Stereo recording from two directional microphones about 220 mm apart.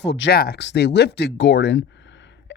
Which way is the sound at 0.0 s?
50° left (ahead or behind).